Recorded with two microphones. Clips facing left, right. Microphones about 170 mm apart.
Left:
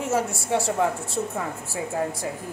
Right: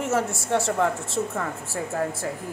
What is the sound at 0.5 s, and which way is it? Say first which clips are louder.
A woman's voice: even; 15° left (ahead or behind).